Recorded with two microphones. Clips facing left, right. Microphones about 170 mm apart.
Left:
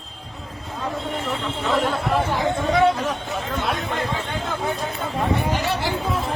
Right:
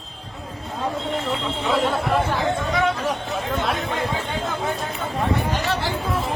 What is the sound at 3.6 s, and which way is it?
Chatter, centre (ahead or behind).